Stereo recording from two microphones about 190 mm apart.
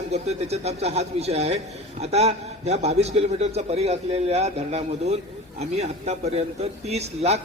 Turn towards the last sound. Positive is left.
turn(degrees=-35)  # may be behind; listen again after turning